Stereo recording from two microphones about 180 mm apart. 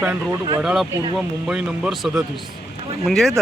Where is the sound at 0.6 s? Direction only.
5° right (ahead or behind).